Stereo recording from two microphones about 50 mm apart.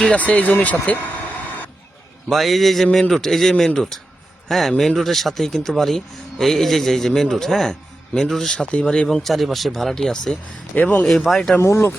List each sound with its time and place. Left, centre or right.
0.1 s speech: left
2.3 s a man's voice: centre
9.0 s speech: centre
10.8 s speech: left
11.3 s speech: centre
11.6 s speech: left